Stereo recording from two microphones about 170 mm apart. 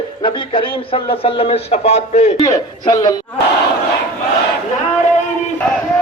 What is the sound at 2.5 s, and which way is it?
Speech, 20° left (ahead or behind).